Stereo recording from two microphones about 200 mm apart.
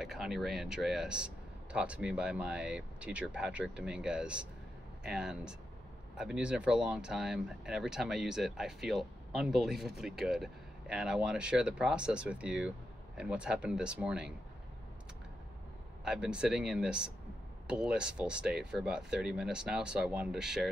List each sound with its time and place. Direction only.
0.0 s speech: centre (ahead or behind)
16.0 s speech: 5° right (ahead or behind)